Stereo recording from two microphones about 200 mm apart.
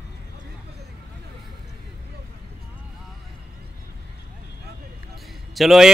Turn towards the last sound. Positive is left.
turn(degrees=0)  # may be behind; listen again after turning